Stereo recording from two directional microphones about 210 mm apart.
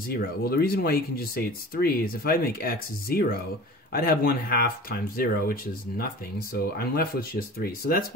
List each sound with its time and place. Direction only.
0.1 s speech: 45° left (ahead or behind)